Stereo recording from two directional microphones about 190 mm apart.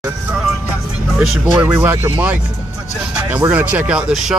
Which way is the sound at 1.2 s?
5° right (ahead or behind).